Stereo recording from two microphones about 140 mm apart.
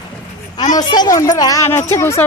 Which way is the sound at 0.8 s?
30° left (ahead or behind).